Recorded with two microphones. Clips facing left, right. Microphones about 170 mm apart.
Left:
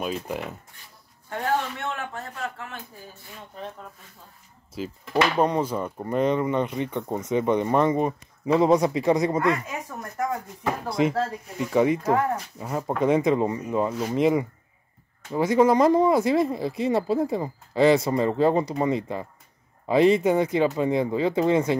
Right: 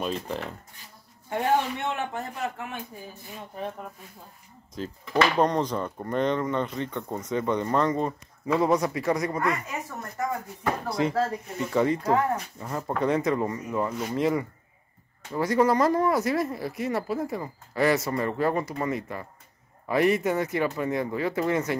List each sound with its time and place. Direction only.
0.0 s speech: 5° left (ahead or behind)
1.3 s a man's voice: 15° right (ahead or behind)
4.7 s speech: 5° left (ahead or behind)
10.9 s speech: 20° left (ahead or behind)